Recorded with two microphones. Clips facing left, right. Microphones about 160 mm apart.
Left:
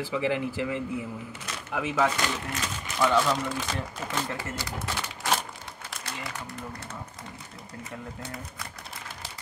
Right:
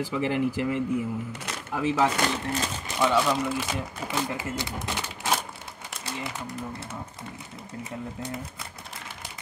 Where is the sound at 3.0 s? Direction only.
10° right (ahead or behind).